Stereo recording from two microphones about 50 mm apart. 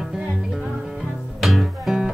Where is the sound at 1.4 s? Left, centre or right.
Centre.